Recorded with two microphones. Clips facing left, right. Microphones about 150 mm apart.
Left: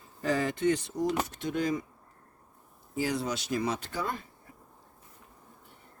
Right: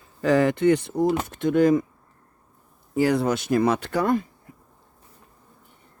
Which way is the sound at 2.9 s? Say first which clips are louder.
Right 10 dB; 60° right (ahead or behind).